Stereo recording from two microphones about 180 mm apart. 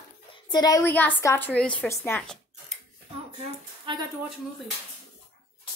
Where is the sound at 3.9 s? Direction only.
30° right (ahead or behind).